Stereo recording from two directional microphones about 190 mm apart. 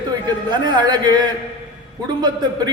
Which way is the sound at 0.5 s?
25° right (ahead or behind).